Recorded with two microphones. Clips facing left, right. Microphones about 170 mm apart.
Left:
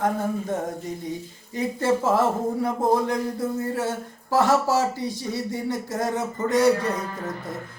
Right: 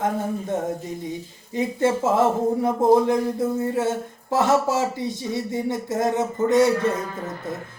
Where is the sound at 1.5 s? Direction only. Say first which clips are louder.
Right 2 dB; 20° right (ahead or behind).